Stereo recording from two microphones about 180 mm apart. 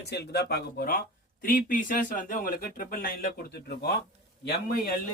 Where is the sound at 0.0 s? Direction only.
65° left (ahead or behind).